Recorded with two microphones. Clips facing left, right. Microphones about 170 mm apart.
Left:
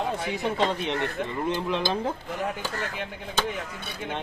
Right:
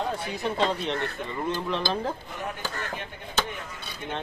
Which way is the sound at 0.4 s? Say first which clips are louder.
Even; 15° left (ahead or behind).